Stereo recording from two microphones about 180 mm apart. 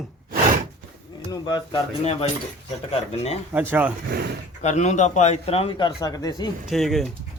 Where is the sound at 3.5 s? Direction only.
10° right (ahead or behind).